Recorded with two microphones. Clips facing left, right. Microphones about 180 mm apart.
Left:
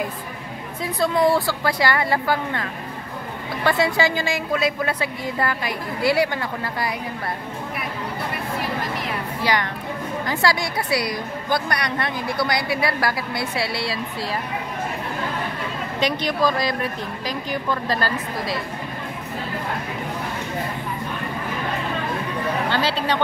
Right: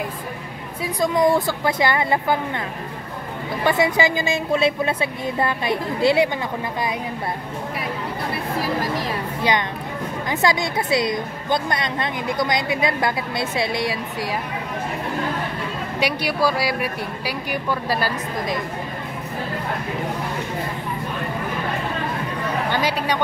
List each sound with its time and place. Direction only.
1.0 s a woman's voice: 20° right (ahead or behind)
3.6 s a woman's voice: 20° right (ahead or behind)
9.4 s a woman's voice: 20° right (ahead or behind)
16.0 s speech: 10° right (ahead or behind)
22.7 s speech: 15° right (ahead or behind)